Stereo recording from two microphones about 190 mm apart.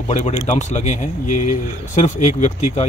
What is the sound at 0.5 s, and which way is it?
Speech, 40° left (ahead or behind).